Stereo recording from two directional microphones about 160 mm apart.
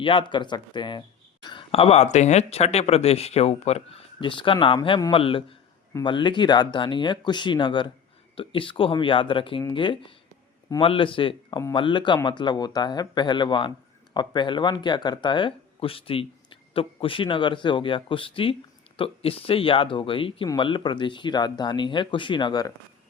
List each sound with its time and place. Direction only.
0.0 s a man's voice: 30° left (ahead or behind)